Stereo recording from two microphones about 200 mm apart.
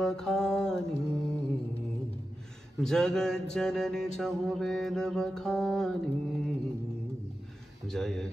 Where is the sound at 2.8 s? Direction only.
5° left (ahead or behind).